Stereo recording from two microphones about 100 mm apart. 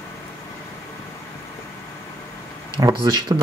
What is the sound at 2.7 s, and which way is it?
Speech, 40° right (ahead or behind).